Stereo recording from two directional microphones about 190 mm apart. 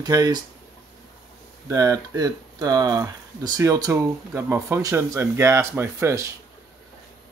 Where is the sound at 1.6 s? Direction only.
20° right (ahead or behind).